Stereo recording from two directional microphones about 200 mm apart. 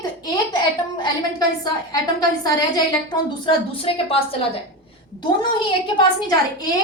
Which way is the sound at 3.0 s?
25° left (ahead or behind).